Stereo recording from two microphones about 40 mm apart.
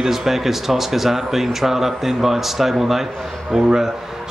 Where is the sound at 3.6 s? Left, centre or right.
Right.